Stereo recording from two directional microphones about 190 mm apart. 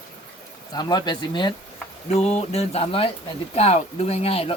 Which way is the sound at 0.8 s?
20° left (ahead or behind).